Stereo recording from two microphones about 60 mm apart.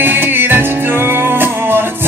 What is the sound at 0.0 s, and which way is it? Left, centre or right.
Music, right.